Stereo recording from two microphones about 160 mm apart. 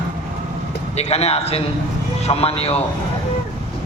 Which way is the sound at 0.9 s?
40° left (ahead or behind).